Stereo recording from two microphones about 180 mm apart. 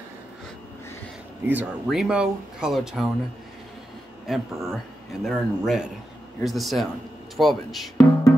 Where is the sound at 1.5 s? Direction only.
5° right (ahead or behind).